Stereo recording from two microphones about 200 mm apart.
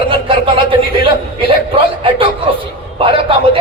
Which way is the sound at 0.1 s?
25° right (ahead or behind).